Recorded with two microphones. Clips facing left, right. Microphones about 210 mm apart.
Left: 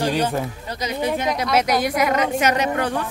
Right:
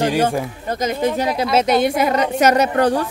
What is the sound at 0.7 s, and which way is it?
Speech, 50° right (ahead or behind).